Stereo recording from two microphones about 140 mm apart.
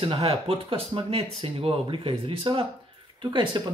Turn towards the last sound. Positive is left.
turn(degrees=-35)  # may be behind; listen again after turning